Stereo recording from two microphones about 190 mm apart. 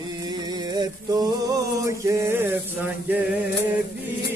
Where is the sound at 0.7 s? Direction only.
20° right (ahead or behind).